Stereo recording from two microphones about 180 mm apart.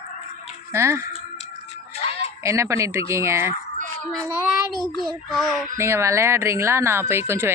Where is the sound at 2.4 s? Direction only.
15° right (ahead or behind).